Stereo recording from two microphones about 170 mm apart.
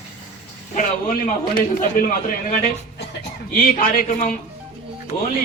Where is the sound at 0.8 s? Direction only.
55° left (ahead or behind).